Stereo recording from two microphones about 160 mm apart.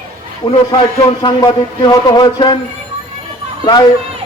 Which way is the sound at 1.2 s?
30° left (ahead or behind).